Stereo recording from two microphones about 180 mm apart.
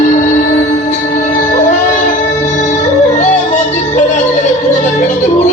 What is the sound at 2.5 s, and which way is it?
Music, 40° left (ahead or behind).